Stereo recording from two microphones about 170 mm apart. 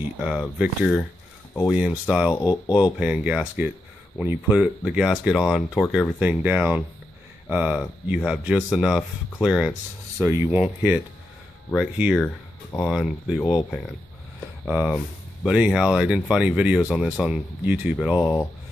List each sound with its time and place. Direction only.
0.2 s speech: 5° right (ahead or behind)
2.3 s speech: 20° left (ahead or behind)
3.0 s speech: 5° right (ahead or behind)
14.7 s speech: 5° right (ahead or behind)